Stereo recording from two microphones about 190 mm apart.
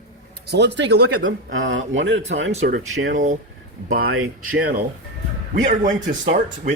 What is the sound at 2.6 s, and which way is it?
Speech, 55° right (ahead or behind).